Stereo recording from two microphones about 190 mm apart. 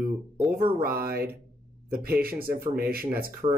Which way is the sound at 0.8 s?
55° right (ahead or behind).